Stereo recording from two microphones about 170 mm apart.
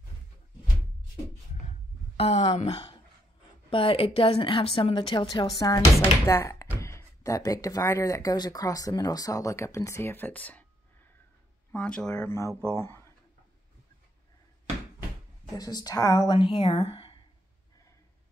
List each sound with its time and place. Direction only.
1.7 s a sound: 40° left (ahead or behind)
3.7 s a woman's voice: 35° left (ahead or behind); by 10.6 s 10° left (ahead or behind)
11.7 s speech: 5° left (ahead or behind)
15.5 s a woman's voice: 20° left (ahead or behind)